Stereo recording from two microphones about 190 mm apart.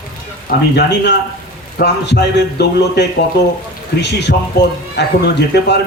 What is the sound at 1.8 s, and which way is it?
A man's voice, 50° left (ahead or behind).